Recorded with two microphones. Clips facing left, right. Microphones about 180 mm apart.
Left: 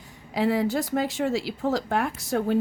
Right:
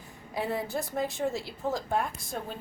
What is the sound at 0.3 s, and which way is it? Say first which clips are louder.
A woman's voice: left 8 dB; 90° left.